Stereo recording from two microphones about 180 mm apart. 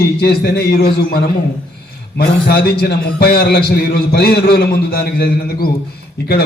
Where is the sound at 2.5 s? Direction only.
65° left (ahead or behind).